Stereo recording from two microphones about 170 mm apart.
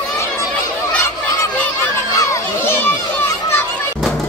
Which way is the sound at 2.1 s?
20° left (ahead or behind).